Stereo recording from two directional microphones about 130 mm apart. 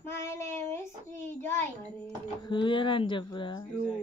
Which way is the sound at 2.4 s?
40° left (ahead or behind).